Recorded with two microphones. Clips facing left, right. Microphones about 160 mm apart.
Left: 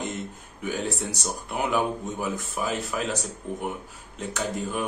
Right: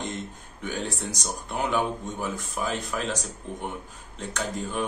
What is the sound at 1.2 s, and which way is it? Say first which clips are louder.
Speech: even; 10° left (ahead or behind).